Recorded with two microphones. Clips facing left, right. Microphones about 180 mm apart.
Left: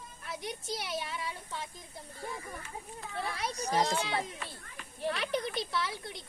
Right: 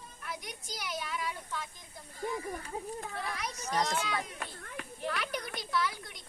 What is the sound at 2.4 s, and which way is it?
Speech, 35° right (ahead or behind).